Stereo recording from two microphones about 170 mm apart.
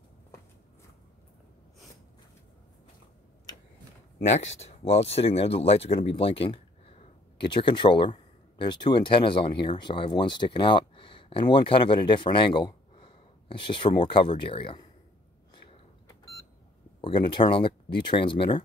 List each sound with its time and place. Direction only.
4.3 s speech: 40° left (ahead or behind)
15.5 s beep: 25° left (ahead or behind)
17.0 s speech: 30° left (ahead or behind)